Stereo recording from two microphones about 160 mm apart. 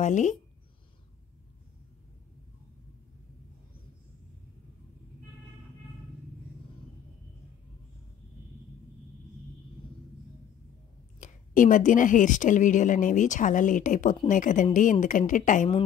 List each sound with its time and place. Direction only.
0.0 s a woman's voice: 50° left (ahead or behind)
11.1 s a woman's voice: 50° left (ahead or behind)